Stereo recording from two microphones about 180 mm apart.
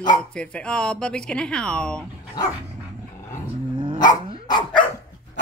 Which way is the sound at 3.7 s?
30° right (ahead or behind).